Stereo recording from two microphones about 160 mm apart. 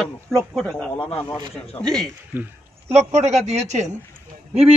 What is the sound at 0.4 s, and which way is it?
A man's voice, 5° left (ahead or behind).